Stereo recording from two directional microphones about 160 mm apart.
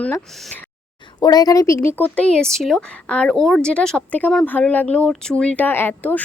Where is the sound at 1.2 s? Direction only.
25° left (ahead or behind).